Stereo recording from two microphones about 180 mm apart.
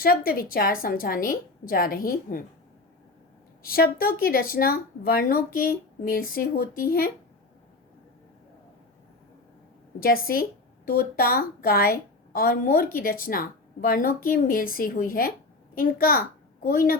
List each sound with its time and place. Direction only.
0.0 s a woman's voice: 55° left (ahead or behind)
3.7 s speech: 55° left (ahead or behind)
10.0 s a woman's voice: 55° left (ahead or behind)